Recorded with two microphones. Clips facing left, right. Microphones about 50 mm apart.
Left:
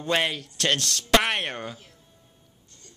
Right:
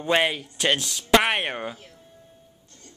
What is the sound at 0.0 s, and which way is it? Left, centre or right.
Speech, centre.